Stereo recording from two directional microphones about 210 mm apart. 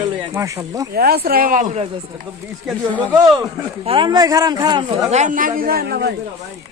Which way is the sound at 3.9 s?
20° right (ahead or behind).